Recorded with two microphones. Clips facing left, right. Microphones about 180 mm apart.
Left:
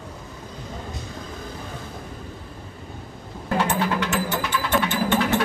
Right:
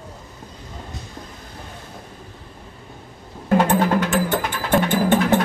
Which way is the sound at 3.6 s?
50° right (ahead or behind).